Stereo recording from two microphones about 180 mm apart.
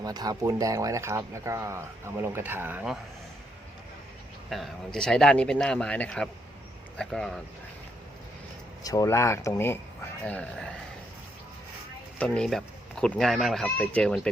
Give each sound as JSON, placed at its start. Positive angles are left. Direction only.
{"t": 0.0, "sound": "speech", "side_deg": -20}
{"t": 4.4, "sound": "speech", "side_deg": 0}
{"t": 8.8, "sound": "speech", "side_deg": 20}
{"t": 12.2, "sound": "speech", "side_deg": 5}